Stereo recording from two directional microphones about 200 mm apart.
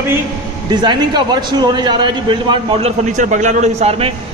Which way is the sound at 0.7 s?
20° right (ahead or behind).